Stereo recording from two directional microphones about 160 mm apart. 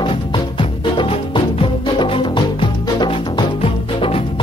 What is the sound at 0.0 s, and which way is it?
Music, 30° left (ahead or behind).